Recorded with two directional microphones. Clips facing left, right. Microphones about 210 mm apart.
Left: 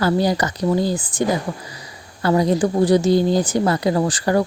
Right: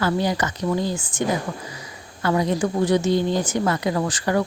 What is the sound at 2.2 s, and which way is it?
A woman's voice, 35° left (ahead or behind).